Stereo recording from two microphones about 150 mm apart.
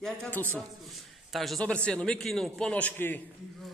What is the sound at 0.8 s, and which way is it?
A man's voice, centre (ahead or behind).